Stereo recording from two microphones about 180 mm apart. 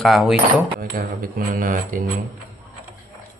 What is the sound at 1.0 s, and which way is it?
Speech, 55° right (ahead or behind).